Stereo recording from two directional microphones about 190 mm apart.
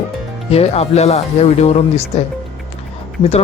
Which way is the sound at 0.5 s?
35° left (ahead or behind).